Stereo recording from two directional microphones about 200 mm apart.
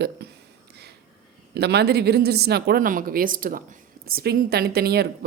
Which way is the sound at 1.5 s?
55° right (ahead or behind).